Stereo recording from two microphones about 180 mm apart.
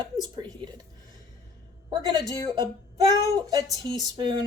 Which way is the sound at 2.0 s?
25° right (ahead or behind).